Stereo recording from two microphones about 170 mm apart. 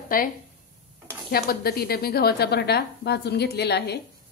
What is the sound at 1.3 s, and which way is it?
A woman's voice, 65° left (ahead or behind).